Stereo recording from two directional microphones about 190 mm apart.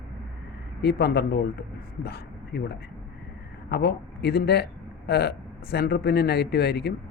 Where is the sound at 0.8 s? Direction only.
60° left (ahead or behind).